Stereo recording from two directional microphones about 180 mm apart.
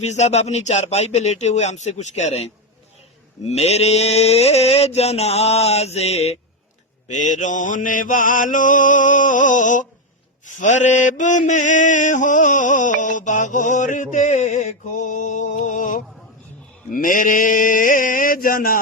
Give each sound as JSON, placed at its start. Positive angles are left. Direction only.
{"t": 0.0, "sound": "mantra", "side_deg": 40}